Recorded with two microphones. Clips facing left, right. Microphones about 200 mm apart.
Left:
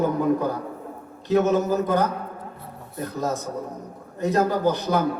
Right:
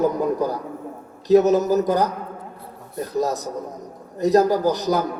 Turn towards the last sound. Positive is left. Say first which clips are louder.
# right 2 dB
turn(degrees=-35)  # may be behind; listen again after turning